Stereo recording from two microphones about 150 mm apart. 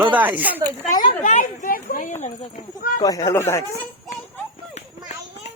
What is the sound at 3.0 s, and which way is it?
Speech, 25° left (ahead or behind).